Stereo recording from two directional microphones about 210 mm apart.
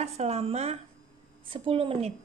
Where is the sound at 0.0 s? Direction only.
30° right (ahead or behind).